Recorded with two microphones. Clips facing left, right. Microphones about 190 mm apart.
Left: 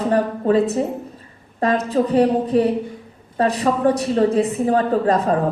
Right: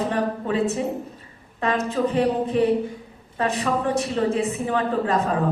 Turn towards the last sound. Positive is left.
turn(degrees=35)  # may be behind; listen again after turning